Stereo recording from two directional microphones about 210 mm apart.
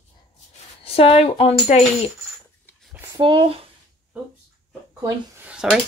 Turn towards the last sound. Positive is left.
turn(degrees=-5)  # may be behind; listen again after turning